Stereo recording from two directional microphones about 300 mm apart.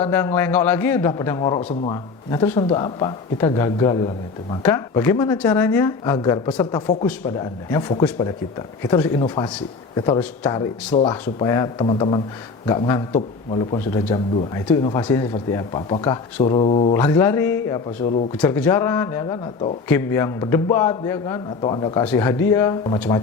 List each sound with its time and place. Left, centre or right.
0.0 s speech: centre
17.0 s speech: centre